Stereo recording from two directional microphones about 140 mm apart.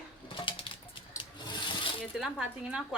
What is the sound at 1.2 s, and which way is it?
Rub, 35° left (ahead or behind).